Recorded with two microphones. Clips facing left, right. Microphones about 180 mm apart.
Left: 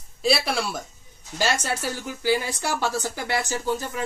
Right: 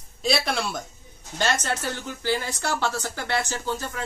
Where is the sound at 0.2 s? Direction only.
5° left (ahead or behind).